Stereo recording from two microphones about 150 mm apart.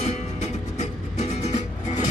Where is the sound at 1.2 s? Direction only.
45° left (ahead or behind).